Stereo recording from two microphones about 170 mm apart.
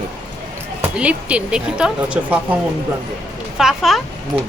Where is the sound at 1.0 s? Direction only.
5° right (ahead or behind).